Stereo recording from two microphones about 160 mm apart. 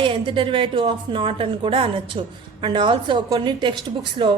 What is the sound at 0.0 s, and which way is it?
A woman's voice, 30° right (ahead or behind).